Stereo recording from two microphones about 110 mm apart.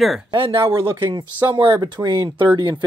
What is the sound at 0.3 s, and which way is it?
Speech, 50° right (ahead or behind).